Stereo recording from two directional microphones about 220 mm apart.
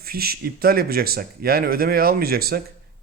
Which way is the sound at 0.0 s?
45° right (ahead or behind).